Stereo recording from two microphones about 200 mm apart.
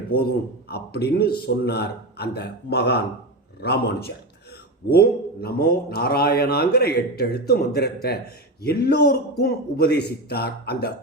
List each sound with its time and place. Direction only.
0.1 s a man's voice: 50° left (ahead or behind)